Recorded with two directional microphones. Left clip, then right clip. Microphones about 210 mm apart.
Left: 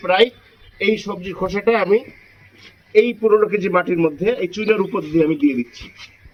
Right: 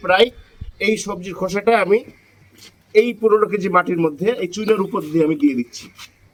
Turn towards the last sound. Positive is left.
turn(degrees=-15)  # may be behind; listen again after turning